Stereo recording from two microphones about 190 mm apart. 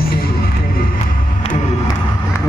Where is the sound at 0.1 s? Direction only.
50° left (ahead or behind).